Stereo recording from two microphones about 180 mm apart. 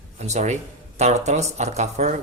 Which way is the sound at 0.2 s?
40° right (ahead or behind).